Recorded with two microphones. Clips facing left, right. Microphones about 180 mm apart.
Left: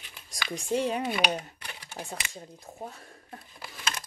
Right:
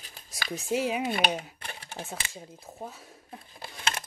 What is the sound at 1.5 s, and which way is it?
Computer keyboard, 30° right (ahead or behind).